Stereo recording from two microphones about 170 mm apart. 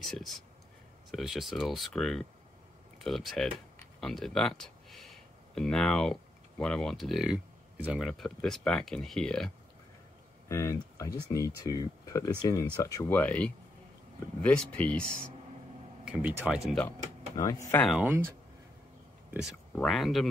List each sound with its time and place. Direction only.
1.1 s speech: centre (ahead or behind)
4.0 s a sound: 5° left (ahead or behind)
6.6 s speech: 5° left (ahead or behind)
10.5 s speech: 20° left (ahead or behind)
16.1 s speech: 10° right (ahead or behind)
17.4 s speech: 20° left (ahead or behind)
17.8 s speech: centre (ahead or behind)
19.7 s speech: 5° left (ahead or behind)